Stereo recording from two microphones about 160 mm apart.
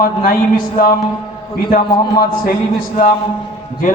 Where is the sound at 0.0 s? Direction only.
60° left (ahead or behind).